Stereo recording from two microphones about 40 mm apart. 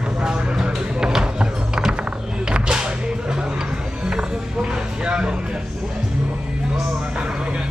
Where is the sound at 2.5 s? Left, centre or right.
Centre.